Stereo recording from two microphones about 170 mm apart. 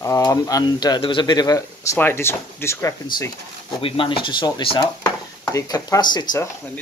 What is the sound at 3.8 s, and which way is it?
Speech, 30° left (ahead or behind).